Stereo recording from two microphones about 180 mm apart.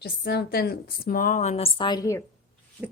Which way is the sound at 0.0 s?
65° left (ahead or behind).